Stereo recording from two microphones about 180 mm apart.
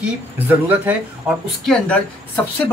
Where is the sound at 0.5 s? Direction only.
10° right (ahead or behind).